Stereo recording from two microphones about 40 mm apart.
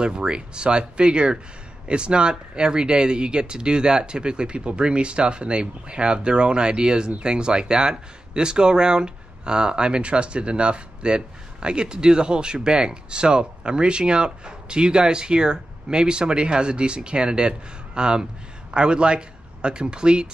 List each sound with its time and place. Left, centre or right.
0.0 s speech: right